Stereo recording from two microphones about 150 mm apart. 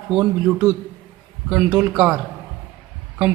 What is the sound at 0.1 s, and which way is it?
A man's voice, 10° right (ahead or behind).